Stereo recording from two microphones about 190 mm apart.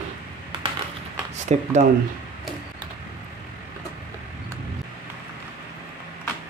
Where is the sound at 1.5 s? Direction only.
35° right (ahead or behind).